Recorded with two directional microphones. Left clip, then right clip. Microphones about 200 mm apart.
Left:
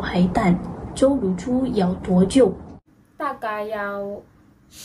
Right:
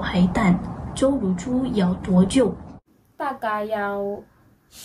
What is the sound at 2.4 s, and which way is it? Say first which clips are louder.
Speech: left 5 dB; 15° right (ahead or behind).